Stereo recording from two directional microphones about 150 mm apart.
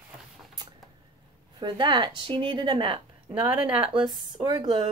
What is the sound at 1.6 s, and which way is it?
A woman's voice, 30° right (ahead or behind).